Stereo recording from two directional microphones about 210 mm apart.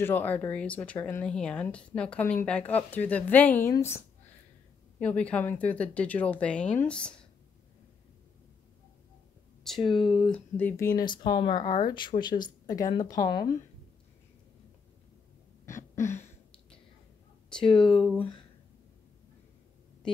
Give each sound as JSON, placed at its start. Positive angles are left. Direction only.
{"t": 0.0, "sound": "speech", "side_deg": 10}
{"t": 9.6, "sound": "speech", "side_deg": 0}
{"t": 15.6, "sound": "a sound", "side_deg": 15}
{"t": 17.7, "sound": "speech", "side_deg": 0}